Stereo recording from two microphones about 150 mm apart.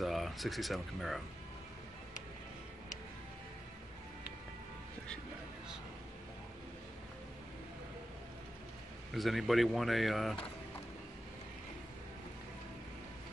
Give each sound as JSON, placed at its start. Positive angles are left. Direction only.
{"t": 0.0, "sound": "speech", "side_deg": 0}
{"t": 9.1, "sound": "speech", "side_deg": 0}